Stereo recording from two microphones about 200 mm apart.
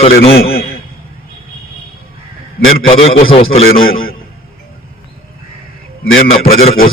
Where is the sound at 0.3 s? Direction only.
50° left (ahead or behind).